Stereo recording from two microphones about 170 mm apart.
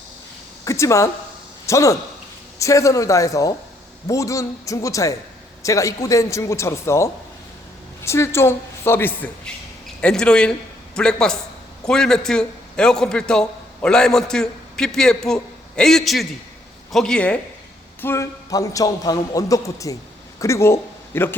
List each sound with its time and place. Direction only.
0.6 s a man's voice: 15° left (ahead or behind)
18.0 s a man's voice: 15° left (ahead or behind)